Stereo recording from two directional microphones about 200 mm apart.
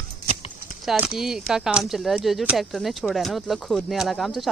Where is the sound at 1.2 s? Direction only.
Centre (ahead or behind).